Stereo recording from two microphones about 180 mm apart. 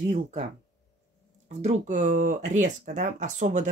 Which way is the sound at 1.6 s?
40° right (ahead or behind).